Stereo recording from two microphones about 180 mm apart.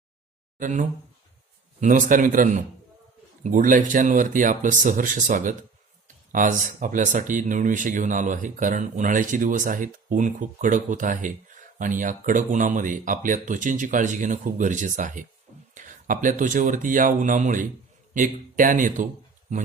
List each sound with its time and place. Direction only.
0.6 s speech: 45° right (ahead or behind)